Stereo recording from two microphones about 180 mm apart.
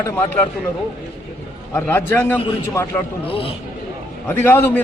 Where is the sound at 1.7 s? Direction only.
10° left (ahead or behind).